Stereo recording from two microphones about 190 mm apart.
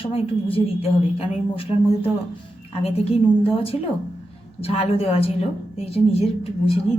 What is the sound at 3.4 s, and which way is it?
A woman's voice, 30° left (ahead or behind).